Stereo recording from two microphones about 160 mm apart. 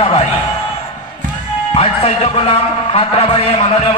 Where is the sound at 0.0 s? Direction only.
35° left (ahead or behind).